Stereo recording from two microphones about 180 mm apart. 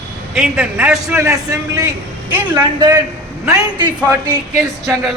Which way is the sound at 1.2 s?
20° right (ahead or behind).